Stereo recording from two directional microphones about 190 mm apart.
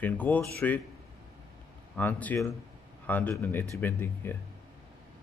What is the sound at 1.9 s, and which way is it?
Speech, 10° left (ahead or behind).